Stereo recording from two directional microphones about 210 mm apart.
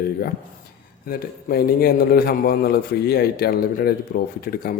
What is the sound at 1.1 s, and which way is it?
A man's voice, 45° left (ahead or behind).